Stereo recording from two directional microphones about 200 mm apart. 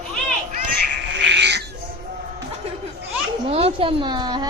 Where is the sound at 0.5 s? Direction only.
55° right (ahead or behind).